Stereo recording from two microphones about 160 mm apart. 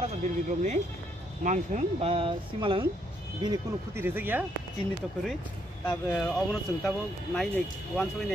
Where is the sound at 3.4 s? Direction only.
20° right (ahead or behind).